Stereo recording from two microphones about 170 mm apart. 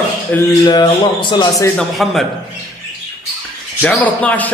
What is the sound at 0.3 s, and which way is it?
Speech, 10° left (ahead or behind).